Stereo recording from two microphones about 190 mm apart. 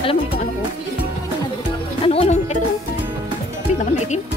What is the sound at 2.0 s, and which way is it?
Music, 35° left (ahead or behind).